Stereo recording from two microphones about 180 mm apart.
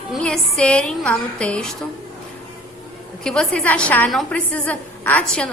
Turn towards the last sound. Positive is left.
turn(degrees=5)  # may be behind; listen again after turning